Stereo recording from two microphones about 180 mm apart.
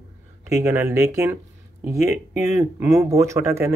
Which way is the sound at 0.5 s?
15° right (ahead or behind).